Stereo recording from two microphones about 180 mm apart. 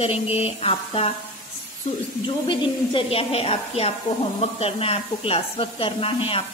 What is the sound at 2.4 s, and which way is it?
A woman's voice, 30° left (ahead or behind).